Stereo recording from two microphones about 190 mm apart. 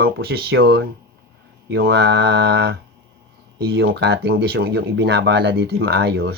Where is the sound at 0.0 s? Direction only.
55° right (ahead or behind).